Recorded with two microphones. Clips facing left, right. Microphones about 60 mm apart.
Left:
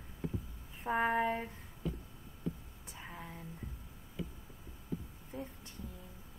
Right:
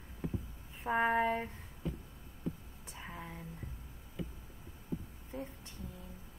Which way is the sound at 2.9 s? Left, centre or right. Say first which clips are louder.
Right 1 dB; centre.